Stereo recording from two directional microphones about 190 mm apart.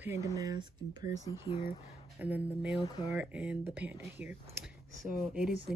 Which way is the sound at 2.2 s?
10° right (ahead or behind).